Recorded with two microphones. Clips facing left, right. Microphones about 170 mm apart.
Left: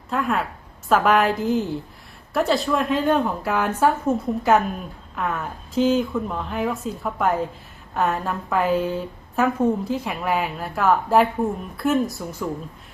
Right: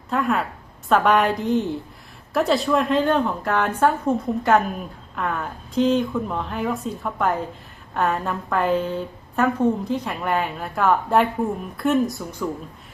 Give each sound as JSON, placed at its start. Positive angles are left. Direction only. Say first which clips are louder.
{"t": 0.1, "sound": "a woman's voice", "louder": "right 1 dB", "side_deg": 0}